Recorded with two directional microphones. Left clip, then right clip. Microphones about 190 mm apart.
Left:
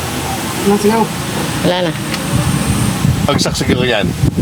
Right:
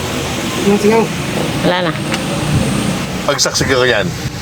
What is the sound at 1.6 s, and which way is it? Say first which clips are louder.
Speech: even; 20° left (ahead or behind).